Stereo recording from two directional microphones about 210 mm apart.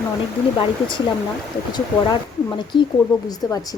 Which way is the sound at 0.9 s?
20° left (ahead or behind).